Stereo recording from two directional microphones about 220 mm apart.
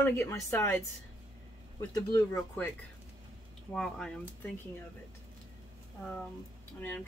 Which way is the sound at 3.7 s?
Centre (ahead or behind).